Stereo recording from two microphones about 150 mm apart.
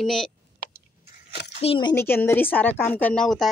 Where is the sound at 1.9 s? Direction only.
15° left (ahead or behind).